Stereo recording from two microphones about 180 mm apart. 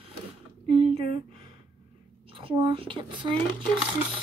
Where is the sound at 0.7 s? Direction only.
30° right (ahead or behind).